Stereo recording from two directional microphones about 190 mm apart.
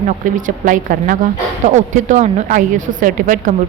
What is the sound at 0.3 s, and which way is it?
A woman's voice, 45° right (ahead or behind).